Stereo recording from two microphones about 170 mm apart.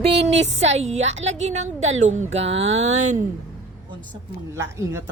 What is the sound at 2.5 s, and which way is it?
Speech, 90° right.